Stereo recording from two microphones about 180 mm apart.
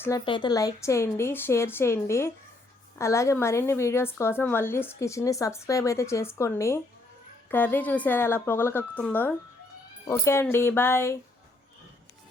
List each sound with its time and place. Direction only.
0.3 s a woman's voice: 25° left (ahead or behind)